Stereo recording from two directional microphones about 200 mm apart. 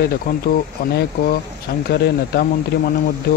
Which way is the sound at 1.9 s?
50° left (ahead or behind).